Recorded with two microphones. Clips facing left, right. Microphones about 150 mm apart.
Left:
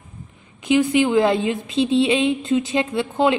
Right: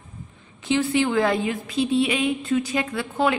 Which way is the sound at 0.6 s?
15° left (ahead or behind).